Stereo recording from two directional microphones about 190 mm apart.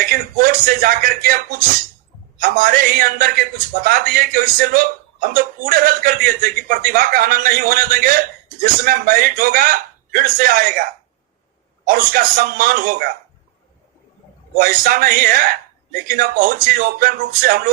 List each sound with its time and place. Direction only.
0.0 s a man's voice: 50° right (ahead or behind)
2.4 s a man's voice: 45° right (ahead or behind)
11.9 s a man's voice: 50° right (ahead or behind)
14.6 s a man's voice: 50° right (ahead or behind)